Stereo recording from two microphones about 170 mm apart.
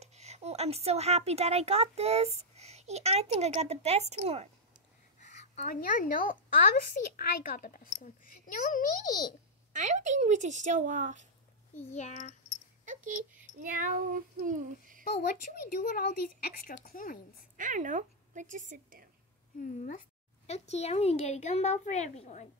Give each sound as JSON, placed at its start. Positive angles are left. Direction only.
{"t": 0.0, "sound": "a woman's voice", "side_deg": -40}
{"t": 5.2, "sound": "a woman's voice", "side_deg": 45}
{"t": 9.7, "sound": "speech", "side_deg": -45}
{"t": 11.9, "sound": "a child's voice", "side_deg": 45}
{"t": 12.8, "sound": "a sound", "side_deg": -50}
{"t": 13.6, "sound": "speech", "side_deg": -55}
{"t": 15.2, "sound": "speech", "side_deg": 55}
{"t": 17.6, "sound": "speech", "side_deg": -50}
{"t": 19.9, "sound": "a woman's voice", "side_deg": 45}